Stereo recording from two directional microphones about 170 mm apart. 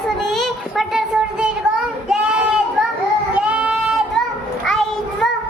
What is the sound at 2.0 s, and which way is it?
Child singing, 5° right (ahead or behind).